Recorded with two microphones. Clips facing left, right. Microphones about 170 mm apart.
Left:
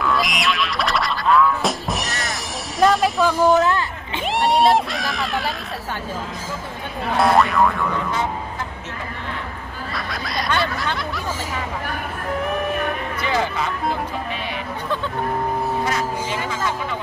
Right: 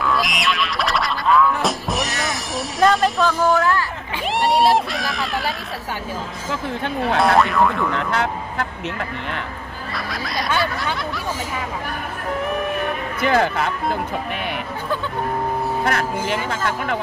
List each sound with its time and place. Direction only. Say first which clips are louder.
0.0 s music: even; centre (ahead or behind)
3.3 s speech: left 4 dB; 20° left (ahead or behind)
4.3 s crowd: even; centre (ahead or behind)
7.2 s speech: left 1 dB; centre (ahead or behind)
7.9 s speech: right 1 dB; 70° right (ahead or behind)
9.9 s speech: right 1 dB; centre (ahead or behind)
13.2 s speech: right 5 dB; 55° right (ahead or behind)
15.8 s speech: right 2 dB; 60° right (ahead or behind)